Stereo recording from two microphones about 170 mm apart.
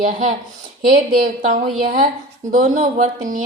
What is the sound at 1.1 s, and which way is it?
A woman's voice, 55° right (ahead or behind).